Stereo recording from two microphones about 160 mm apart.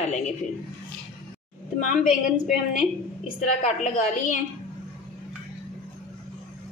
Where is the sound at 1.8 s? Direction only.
50° left (ahead or behind).